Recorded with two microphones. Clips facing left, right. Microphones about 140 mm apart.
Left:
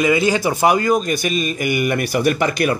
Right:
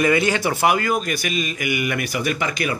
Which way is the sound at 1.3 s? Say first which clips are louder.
Left 4 dB; 40° left (ahead or behind).